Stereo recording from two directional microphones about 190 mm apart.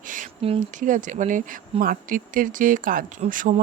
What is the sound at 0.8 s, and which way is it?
Speech, 40° right (ahead or behind).